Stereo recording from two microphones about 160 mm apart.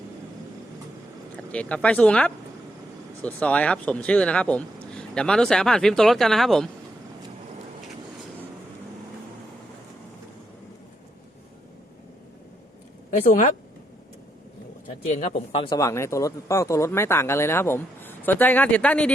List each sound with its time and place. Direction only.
1.4 s speech: 10° left (ahead or behind)
13.1 s speech: 55° left (ahead or behind)
15.0 s speech: 45° left (ahead or behind)
15.6 s speech: 25° left (ahead or behind); by 19.1 s 5° left (ahead or behind)